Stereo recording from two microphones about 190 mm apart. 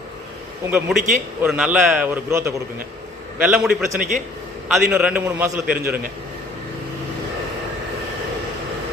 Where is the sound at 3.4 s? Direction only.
5° right (ahead or behind).